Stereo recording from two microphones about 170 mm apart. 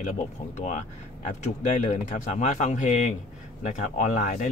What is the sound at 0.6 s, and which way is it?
Speech, 45° left (ahead or behind).